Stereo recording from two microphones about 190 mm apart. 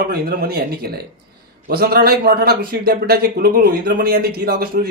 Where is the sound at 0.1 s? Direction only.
55° right (ahead or behind).